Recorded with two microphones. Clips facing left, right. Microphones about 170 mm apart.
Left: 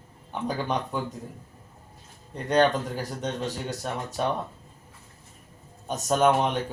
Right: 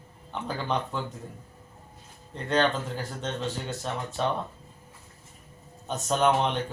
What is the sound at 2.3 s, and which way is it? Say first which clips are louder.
Speech: left 3 dB; 15° left (ahead or behind).